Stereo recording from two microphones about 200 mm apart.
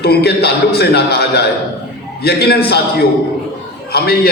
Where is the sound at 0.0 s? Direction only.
55° left (ahead or behind).